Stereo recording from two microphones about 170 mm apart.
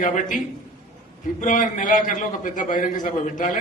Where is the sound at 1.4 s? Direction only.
50° left (ahead or behind).